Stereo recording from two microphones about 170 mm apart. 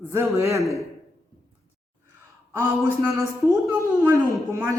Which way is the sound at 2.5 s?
15° right (ahead or behind).